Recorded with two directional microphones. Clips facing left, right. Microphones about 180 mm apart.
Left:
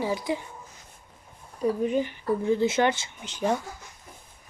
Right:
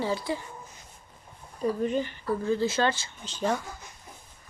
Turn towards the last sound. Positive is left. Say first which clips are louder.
# left 2 dB
turn(degrees=15)  # may be behind; listen again after turning